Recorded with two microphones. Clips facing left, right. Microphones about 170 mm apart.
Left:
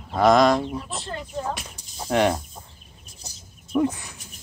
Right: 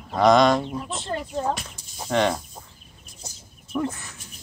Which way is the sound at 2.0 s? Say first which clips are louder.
Left 1 dB; 10° left (ahead or behind).